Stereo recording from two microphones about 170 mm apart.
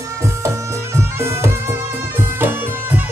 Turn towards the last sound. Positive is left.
turn(degrees=-10)  # may be behind; listen again after turning